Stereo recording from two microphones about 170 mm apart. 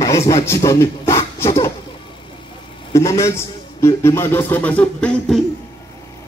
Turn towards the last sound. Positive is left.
turn(degrees=5)  # may be behind; listen again after turning